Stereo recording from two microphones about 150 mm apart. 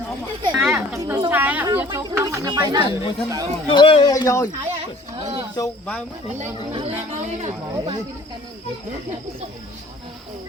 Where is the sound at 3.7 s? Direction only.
35° left (ahead or behind).